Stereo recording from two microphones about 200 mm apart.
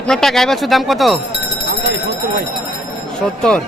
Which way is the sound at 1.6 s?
50° right (ahead or behind).